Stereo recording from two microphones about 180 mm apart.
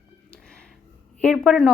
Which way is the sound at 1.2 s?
Centre (ahead or behind).